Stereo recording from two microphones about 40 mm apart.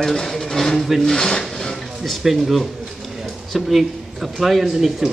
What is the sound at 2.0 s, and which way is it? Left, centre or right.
Speech, centre.